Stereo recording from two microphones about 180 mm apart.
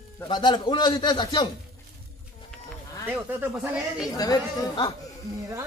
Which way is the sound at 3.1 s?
10° right (ahead or behind).